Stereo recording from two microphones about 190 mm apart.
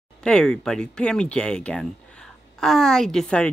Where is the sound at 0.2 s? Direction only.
5° left (ahead or behind).